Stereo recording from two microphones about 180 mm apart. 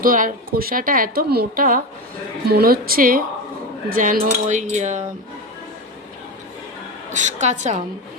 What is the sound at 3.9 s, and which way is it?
Cutlery, 50° right (ahead or behind).